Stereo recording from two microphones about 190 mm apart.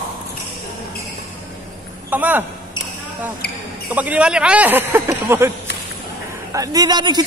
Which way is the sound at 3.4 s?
55° left (ahead or behind).